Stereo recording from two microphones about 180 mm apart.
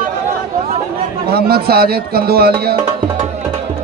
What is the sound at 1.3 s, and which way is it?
A man's voice, 60° right (ahead or behind).